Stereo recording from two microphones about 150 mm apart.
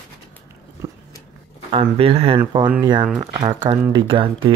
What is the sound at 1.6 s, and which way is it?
Speech, 40° right (ahead or behind).